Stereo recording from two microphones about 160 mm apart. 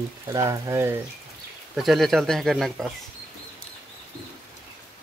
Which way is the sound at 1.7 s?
Centre (ahead or behind).